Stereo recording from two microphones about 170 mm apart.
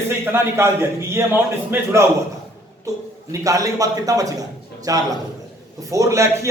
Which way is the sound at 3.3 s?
20° right (ahead or behind).